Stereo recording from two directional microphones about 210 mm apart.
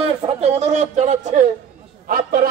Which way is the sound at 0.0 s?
30° right (ahead or behind).